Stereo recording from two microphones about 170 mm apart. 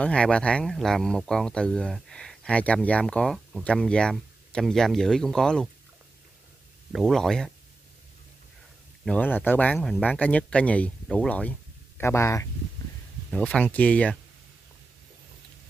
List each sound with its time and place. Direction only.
0.0 s speech: 5° left (ahead or behind)
6.9 s speech: centre (ahead or behind)
9.0 s speech: 5° left (ahead or behind)
13.3 s speech: 5° left (ahead or behind)